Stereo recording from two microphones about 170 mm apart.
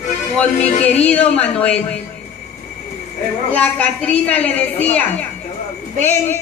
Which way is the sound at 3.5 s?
10° left (ahead or behind).